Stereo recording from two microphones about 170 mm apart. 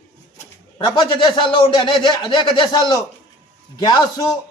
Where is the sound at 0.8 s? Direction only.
25° left (ahead or behind).